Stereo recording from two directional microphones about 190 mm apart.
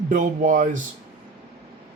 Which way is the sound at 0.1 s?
45° right (ahead or behind).